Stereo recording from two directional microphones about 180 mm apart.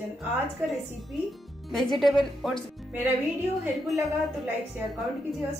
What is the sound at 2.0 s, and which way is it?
Speech, centre (ahead or behind).